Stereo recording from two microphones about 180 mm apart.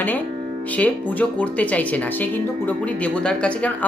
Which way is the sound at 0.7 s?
10° left (ahead or behind).